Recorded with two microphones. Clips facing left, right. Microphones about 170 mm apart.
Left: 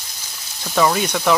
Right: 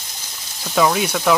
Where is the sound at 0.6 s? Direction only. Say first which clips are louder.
Even; centre (ahead or behind).